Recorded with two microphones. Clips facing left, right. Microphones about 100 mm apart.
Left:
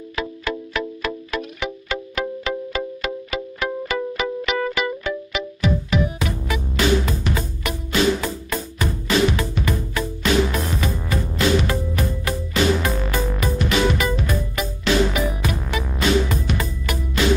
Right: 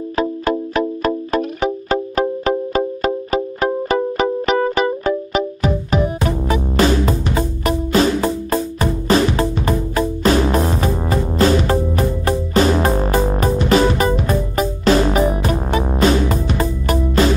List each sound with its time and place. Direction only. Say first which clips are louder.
0.1 s music: right 8 dB; 40° right (ahead or behind)